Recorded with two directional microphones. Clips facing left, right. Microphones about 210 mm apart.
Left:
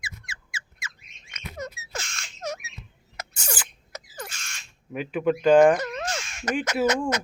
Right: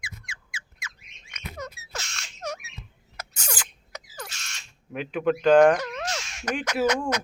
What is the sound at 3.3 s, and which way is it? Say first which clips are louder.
Rodents: left 2 dB; 10° left (ahead or behind).